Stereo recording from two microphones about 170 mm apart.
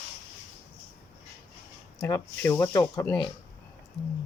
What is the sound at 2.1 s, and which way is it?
Speech, 15° left (ahead or behind).